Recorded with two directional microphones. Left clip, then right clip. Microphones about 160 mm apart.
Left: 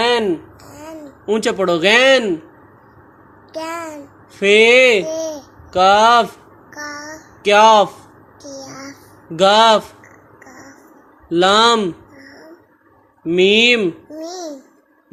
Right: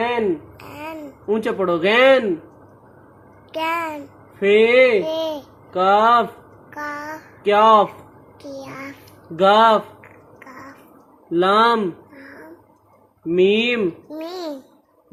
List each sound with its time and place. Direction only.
0.7 s babbling: 10° right (ahead or behind)
1.3 s speech: 20° left (ahead or behind)
3.5 s a child's voice: 5° right (ahead or behind)
4.4 s speech: 25° left (ahead or behind)
5.0 s a child's voice: 10° right (ahead or behind)
5.7 s speech: 25° left (ahead or behind)
6.7 s a sound: 5° right (ahead or behind)
7.4 s speech: 25° left (ahead or behind)
8.4 s a child's voice: centre (ahead or behind)
9.4 s speech: 20° left (ahead or behind)
11.3 s speech: 20° left (ahead or behind)
13.3 s speech: 20° left (ahead or behind)